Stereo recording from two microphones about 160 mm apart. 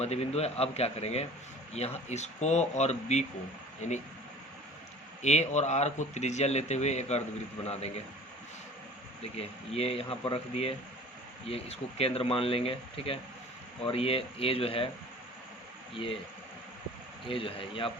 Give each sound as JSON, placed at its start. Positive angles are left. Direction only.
{"t": 0.0, "sound": "speech", "side_deg": 40}
{"t": 5.2, "sound": "speech", "side_deg": 45}
{"t": 9.2, "sound": "speech", "side_deg": 40}
{"t": 17.2, "sound": "speech", "side_deg": 35}